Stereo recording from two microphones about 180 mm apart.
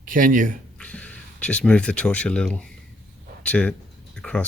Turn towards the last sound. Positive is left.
turn(degrees=5)  # may be behind; listen again after turning